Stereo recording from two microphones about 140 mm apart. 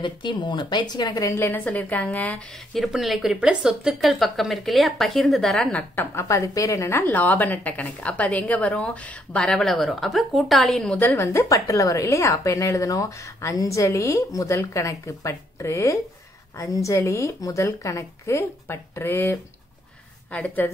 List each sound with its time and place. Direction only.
0.0 s speech: 35° left (ahead or behind)
1.3 s a woman's voice: 15° left (ahead or behind)
11.0 s a woman's voice: 15° left (ahead or behind)